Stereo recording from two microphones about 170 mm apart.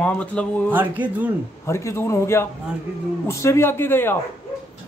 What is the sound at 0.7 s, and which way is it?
Speech, 10° right (ahead or behind).